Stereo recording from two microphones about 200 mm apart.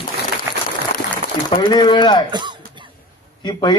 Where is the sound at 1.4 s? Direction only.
20° left (ahead or behind).